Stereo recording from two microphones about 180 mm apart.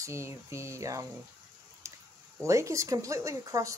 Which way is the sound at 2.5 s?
15° right (ahead or behind).